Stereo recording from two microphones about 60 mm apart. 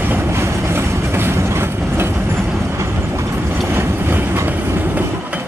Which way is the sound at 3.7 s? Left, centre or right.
Right.